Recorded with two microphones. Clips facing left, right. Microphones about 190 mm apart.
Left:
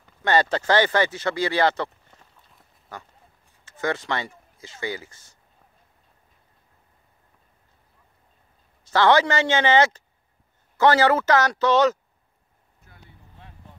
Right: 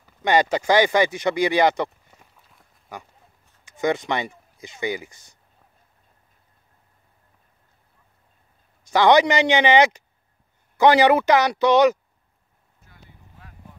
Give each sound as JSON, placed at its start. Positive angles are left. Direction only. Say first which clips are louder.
{"t": 0.2, "sound": "speech", "louder": "right 2 dB", "side_deg": -15}
{"t": 8.8, "sound": "speech", "louder": "right 3 dB", "side_deg": -15}